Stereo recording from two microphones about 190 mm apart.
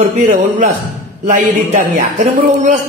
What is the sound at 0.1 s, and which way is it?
A man's voice, 40° right (ahead or behind).